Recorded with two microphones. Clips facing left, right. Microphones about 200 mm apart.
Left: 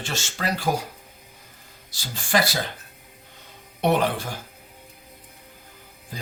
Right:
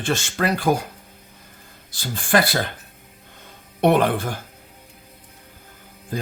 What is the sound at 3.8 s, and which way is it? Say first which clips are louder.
Speech: right 4 dB; 55° right (ahead or behind).